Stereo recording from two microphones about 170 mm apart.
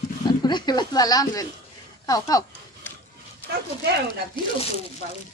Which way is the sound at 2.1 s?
20° left (ahead or behind).